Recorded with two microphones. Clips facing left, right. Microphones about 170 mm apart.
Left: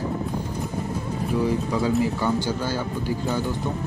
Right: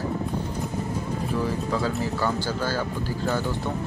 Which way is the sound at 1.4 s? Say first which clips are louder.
Left 4 dB; 15° left (ahead or behind).